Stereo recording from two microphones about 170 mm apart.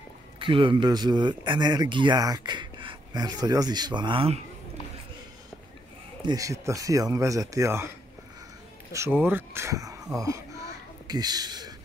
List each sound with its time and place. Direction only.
0.4 s speech: 30° right (ahead or behind)
6.2 s speech: 20° right (ahead or behind)
8.9 s speech: 15° right (ahead or behind)